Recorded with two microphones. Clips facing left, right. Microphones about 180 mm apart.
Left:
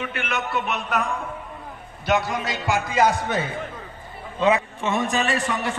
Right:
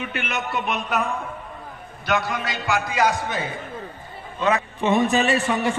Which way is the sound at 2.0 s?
25° left (ahead or behind).